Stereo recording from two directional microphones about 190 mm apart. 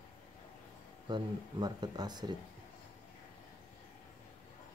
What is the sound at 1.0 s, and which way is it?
Speech, 25° right (ahead or behind).